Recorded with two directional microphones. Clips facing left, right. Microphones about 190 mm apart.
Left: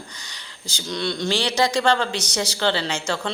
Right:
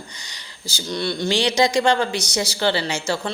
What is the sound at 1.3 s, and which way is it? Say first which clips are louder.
A woman's voice: right 3 dB; 15° right (ahead or behind).